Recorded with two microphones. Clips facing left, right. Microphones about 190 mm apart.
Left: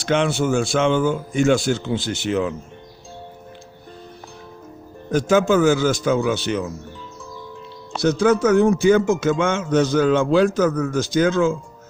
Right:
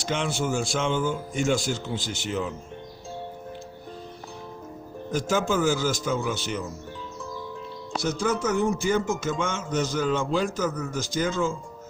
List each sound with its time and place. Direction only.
0.0 s a man's voice: 70° left (ahead or behind)
5.1 s a man's voice: 65° left (ahead or behind)
7.9 s a man's voice: 70° left (ahead or behind)